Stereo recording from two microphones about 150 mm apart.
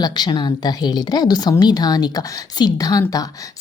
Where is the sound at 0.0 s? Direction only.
30° left (ahead or behind).